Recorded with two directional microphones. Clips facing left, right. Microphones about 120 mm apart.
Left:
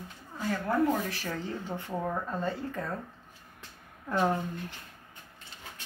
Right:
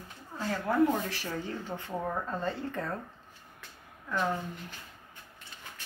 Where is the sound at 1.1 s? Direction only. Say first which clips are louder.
Left 1 dB; 20° right (ahead or behind).